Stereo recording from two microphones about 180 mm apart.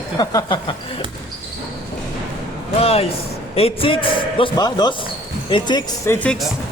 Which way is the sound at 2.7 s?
35° left (ahead or behind).